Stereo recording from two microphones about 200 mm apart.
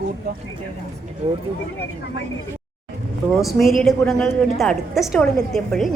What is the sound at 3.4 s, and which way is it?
A woman's voice, centre (ahead or behind).